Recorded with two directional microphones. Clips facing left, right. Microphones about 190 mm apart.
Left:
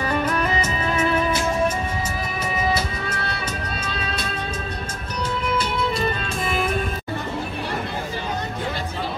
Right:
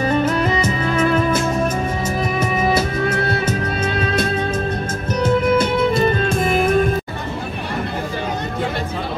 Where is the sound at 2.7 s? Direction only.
50° right (ahead or behind).